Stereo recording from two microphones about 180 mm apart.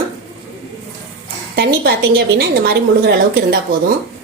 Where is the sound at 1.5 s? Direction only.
60° right (ahead or behind).